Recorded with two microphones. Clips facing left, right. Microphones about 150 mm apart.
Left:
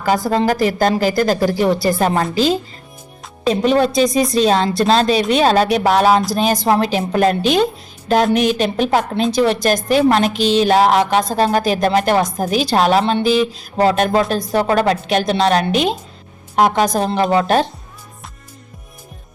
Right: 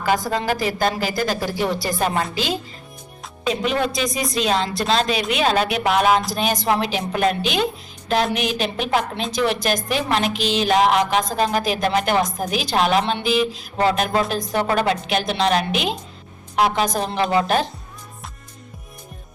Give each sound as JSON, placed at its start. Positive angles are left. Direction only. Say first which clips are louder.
{"t": 0.3, "sound": "speech", "louder": "left 6 dB", "side_deg": 40}